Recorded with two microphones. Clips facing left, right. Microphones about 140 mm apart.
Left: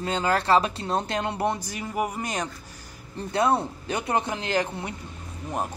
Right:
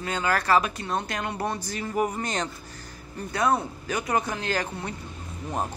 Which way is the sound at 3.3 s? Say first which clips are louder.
Left 2 dB; 25° left (ahead or behind).